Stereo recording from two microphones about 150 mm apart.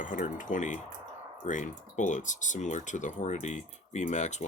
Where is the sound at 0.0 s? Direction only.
60° left (ahead or behind).